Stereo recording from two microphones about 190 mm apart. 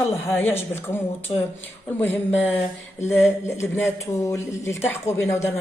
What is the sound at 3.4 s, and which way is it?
Speech, 15° left (ahead or behind).